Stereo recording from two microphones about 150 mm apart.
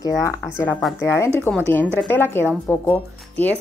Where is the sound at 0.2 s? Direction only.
20° left (ahead or behind).